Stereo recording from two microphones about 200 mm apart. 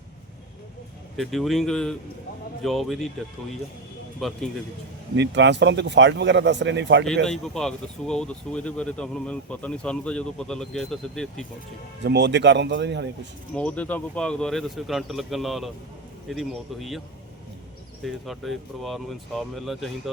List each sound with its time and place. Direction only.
1.1 s speech: centre (ahead or behind)
4.2 s speech: centre (ahead or behind)
5.1 s speech: 60° right (ahead or behind)
7.3 s speech: centre (ahead or behind)
12.0 s speech: 60° right (ahead or behind)
13.5 s speech: 5° left (ahead or behind)
18.0 s speech: centre (ahead or behind)